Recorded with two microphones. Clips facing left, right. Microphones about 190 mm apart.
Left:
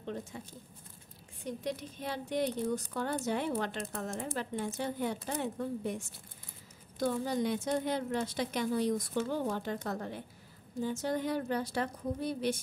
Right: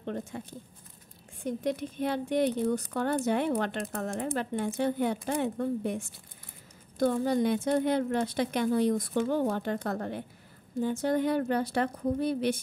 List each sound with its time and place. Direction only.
0.0 s a woman's voice: 60° right (ahead or behind)